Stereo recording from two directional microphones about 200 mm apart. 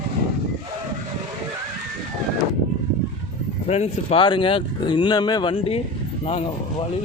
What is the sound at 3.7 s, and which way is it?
Speech, 30° left (ahead or behind).